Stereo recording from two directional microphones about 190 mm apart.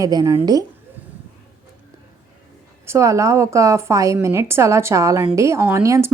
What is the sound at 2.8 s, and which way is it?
Speech, 15° right (ahead or behind).